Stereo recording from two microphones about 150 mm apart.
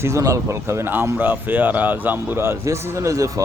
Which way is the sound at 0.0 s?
20° right (ahead or behind).